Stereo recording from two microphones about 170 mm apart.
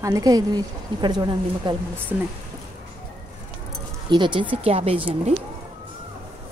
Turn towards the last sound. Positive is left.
turn(degrees=-35)  # may be behind; listen again after turning